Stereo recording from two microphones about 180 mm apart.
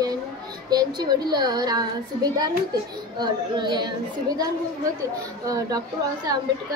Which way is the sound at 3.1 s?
25° right (ahead or behind).